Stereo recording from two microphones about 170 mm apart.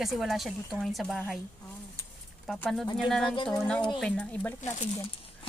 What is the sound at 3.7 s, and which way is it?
Speech, 5° left (ahead or behind).